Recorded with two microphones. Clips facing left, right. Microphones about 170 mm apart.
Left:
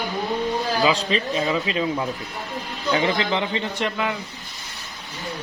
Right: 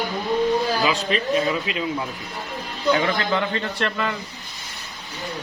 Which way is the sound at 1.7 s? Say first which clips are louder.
Left 3 dB; 30° left (ahead or behind).